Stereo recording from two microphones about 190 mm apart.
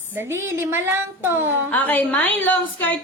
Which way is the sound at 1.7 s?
10° left (ahead or behind).